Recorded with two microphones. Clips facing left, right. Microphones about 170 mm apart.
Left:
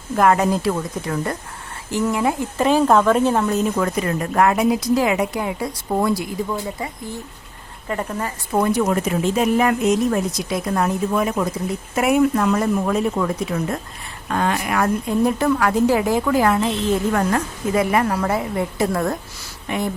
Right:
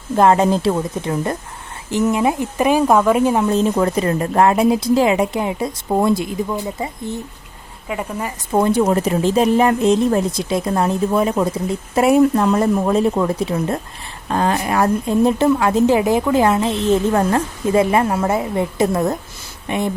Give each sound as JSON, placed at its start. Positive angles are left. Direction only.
{"t": 0.2, "sound": "speech", "side_deg": -25}
{"t": 3.5, "sound": "speech", "side_deg": -30}
{"t": 7.9, "sound": "speech", "side_deg": -10}
{"t": 8.5, "sound": "speech", "side_deg": -25}